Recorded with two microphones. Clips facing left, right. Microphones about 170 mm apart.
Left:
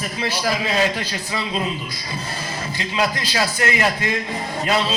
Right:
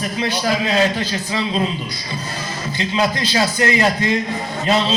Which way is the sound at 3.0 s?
20° right (ahead or behind).